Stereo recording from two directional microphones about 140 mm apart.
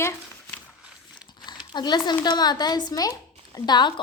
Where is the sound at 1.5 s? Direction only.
30° left (ahead or behind).